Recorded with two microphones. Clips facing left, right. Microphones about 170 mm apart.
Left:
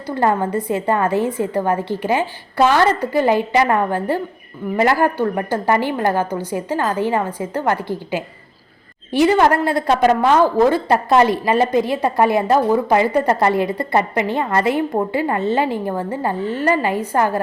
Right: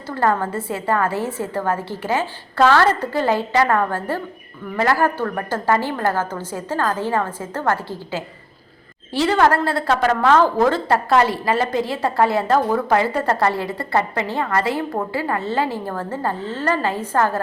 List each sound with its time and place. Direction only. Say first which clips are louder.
0.1 s a woman's voice: left 2 dB; 15° left (ahead or behind)